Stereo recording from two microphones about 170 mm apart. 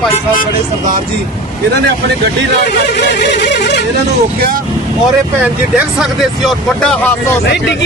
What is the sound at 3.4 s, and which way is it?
Music, 90° left.